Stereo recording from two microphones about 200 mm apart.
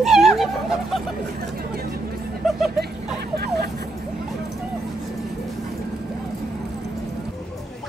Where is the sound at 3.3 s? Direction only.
50° right (ahead or behind).